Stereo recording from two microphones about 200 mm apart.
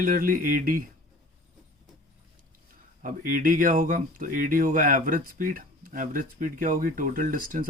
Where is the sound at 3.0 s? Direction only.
45° right (ahead or behind).